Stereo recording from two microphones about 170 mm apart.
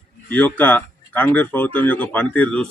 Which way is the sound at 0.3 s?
10° left (ahead or behind).